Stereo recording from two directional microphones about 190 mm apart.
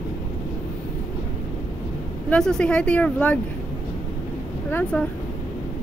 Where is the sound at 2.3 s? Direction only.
5° left (ahead or behind).